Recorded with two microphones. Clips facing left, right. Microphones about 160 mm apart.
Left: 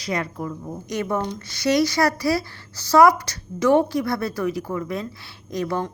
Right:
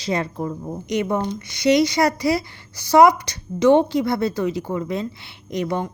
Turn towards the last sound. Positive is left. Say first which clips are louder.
# right 1 dB
turn(degrees=-20)  # may be behind; listen again after turning